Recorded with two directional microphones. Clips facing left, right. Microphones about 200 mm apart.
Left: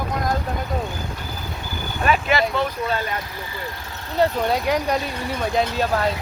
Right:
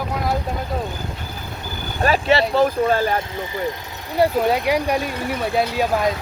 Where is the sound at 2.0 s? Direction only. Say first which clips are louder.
Right 3 dB; 35° right (ahead or behind).